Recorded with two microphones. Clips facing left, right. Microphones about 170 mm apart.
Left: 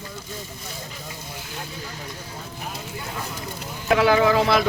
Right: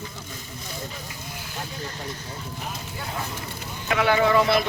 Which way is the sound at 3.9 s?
85° left.